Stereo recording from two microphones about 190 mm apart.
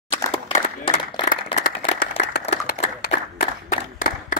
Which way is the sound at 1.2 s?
40° left (ahead or behind).